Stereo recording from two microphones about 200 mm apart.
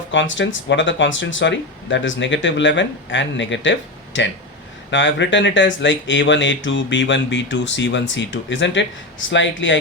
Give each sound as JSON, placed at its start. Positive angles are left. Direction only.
{"t": 0.1, "sound": "speech", "side_deg": 65}